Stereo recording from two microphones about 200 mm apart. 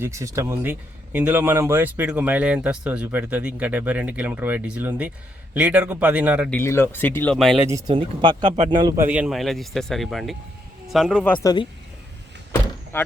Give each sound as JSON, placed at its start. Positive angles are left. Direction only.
{"t": 0.0, "sound": "speech", "side_deg": -15}
{"t": 6.5, "sound": "speech", "side_deg": 10}
{"t": 7.7, "sound": "speech", "side_deg": -15}
{"t": 8.5, "sound": "a man's voice", "side_deg": -35}
{"t": 8.8, "sound": "speech", "side_deg": -15}
{"t": 11.4, "sound": "speech", "side_deg": 25}